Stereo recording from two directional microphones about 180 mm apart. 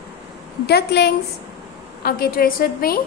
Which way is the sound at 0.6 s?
65° left (ahead or behind).